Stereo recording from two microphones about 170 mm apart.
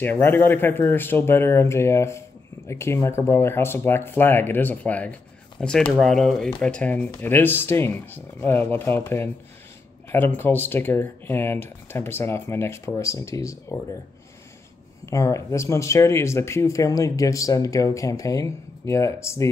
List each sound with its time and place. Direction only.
0.0 s speech: 10° left (ahead or behind)
15.0 s speech: 20° left (ahead or behind)